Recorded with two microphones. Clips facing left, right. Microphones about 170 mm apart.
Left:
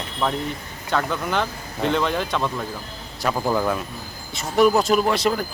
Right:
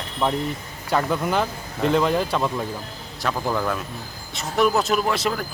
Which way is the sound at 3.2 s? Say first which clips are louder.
Left 2 dB; 10° left (ahead or behind).